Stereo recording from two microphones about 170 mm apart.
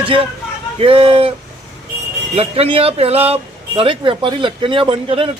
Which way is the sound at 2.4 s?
35° right (ahead or behind).